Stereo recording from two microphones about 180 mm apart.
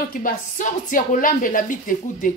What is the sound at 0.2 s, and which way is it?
A woman's voice, 45° left (ahead or behind).